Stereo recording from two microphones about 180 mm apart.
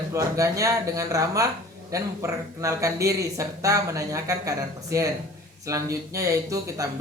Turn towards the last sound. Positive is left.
turn(degrees=-20)  # may be behind; listen again after turning